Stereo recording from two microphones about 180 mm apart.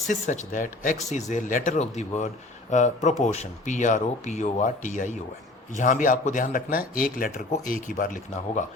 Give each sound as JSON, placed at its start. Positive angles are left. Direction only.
{"t": 0.1, "sound": "speech", "side_deg": 45}